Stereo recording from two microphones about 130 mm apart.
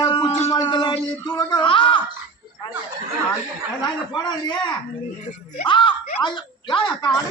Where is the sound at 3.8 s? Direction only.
35° left (ahead or behind).